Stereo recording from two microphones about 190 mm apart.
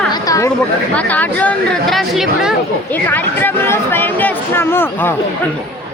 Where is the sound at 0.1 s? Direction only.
20° left (ahead or behind).